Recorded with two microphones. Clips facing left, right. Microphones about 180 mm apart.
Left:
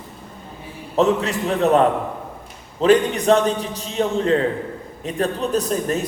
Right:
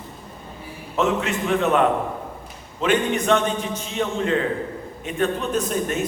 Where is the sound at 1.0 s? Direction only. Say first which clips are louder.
Left 4 dB; 35° left (ahead or behind).